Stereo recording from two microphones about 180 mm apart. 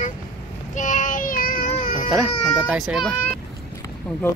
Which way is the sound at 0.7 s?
45° left (ahead or behind).